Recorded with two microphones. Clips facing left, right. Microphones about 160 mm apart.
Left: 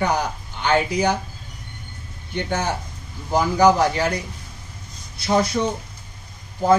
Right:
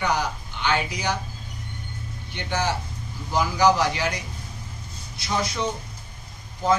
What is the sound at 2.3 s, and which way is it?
Speech, 45° left (ahead or behind).